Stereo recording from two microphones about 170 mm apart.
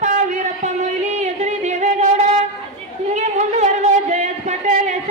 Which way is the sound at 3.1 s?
40° right (ahead or behind).